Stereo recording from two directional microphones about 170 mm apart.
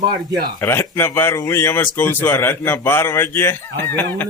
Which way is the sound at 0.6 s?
15° left (ahead or behind).